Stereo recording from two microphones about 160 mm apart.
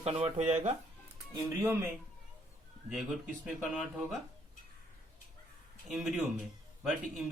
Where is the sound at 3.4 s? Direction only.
Centre (ahead or behind).